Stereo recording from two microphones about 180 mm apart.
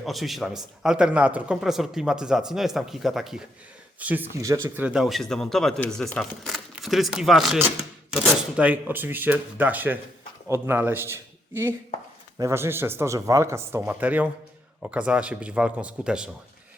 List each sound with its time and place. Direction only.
0.0 s a man's voice: centre (ahead or behind)